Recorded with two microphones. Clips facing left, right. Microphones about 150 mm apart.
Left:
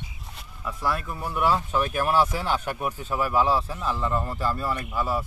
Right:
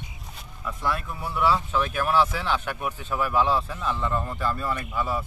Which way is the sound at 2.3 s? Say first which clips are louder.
Left 1 dB; 40° left (ahead or behind).